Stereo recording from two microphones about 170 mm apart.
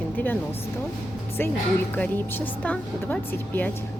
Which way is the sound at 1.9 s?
10° left (ahead or behind).